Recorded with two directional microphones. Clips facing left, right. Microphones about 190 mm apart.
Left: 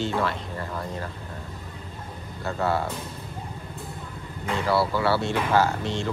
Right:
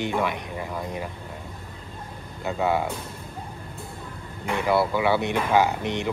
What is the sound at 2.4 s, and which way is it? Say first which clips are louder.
Speech: right 2 dB; 15° right (ahead or behind).